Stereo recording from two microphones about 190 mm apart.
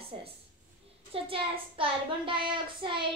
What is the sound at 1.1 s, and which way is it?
A child's voice, 30° right (ahead or behind).